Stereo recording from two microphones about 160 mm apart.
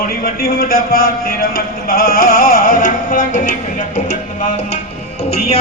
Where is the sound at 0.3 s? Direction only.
70° left (ahead or behind); by 4.2 s 50° left (ahead or behind).